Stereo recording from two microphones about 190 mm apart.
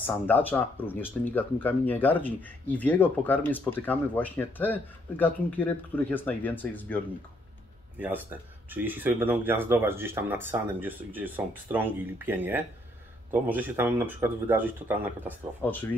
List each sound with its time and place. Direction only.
0.0 s speech: 10° left (ahead or behind)
8.0 s speech: 10° right (ahead or behind)
15.6 s speech: 10° left (ahead or behind)